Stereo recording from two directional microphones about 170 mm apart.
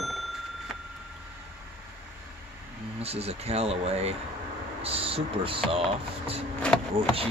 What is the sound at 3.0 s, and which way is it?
Speech, 35° right (ahead or behind).